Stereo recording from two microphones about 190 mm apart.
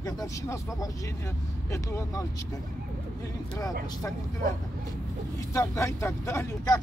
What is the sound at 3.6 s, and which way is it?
Speech, 20° left (ahead or behind).